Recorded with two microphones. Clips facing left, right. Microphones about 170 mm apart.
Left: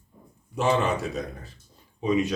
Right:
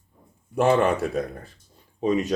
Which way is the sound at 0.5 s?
55° right (ahead or behind).